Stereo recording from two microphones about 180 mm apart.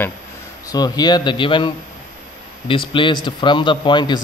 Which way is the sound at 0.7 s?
20° left (ahead or behind).